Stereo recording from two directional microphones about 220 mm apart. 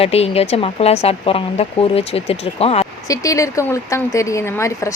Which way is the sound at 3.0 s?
15° left (ahead or behind).